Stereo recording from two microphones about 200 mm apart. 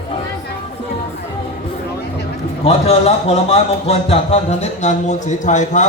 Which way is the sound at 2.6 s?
30° left (ahead or behind).